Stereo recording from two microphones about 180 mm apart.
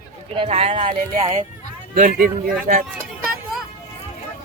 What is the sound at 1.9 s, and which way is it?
Speech, 45° right (ahead or behind).